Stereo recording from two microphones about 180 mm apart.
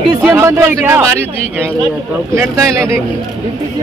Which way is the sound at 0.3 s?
15° right (ahead or behind).